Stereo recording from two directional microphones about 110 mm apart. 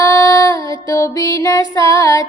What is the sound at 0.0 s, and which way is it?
Music, 30° left (ahead or behind).